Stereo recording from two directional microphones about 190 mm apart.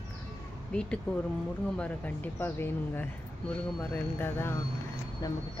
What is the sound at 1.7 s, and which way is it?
Speech, 5° left (ahead or behind).